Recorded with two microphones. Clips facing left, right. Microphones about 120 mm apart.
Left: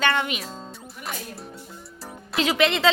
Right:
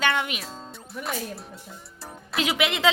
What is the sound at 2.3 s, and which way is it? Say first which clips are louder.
Speech: left 4 dB; 10° right (ahead or behind).